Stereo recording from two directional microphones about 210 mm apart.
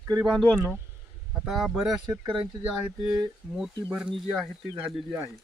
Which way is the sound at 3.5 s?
5° right (ahead or behind).